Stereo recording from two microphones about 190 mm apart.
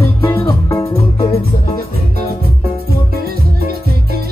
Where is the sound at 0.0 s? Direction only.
15° left (ahead or behind).